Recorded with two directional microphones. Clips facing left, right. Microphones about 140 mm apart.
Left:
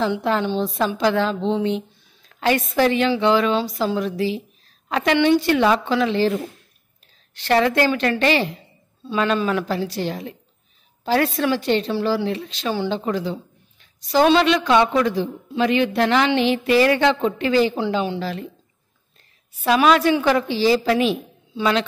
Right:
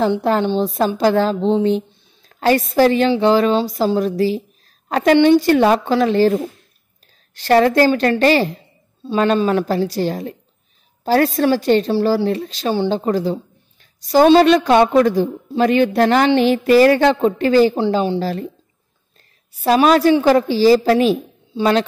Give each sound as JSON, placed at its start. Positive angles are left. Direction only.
{"t": 0.0, "sound": "a woman's voice", "side_deg": -40}
{"t": 19.5, "sound": "a woman's voice", "side_deg": -40}